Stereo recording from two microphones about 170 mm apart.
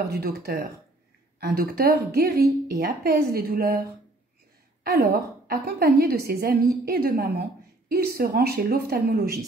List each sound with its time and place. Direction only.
0.1 s a woman's voice: 65° right (ahead or behind)
4.8 s a woman's voice: 65° right (ahead or behind)